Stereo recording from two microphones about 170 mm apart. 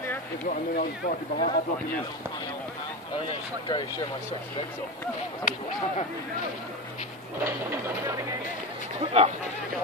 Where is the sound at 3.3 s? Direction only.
30° left (ahead or behind).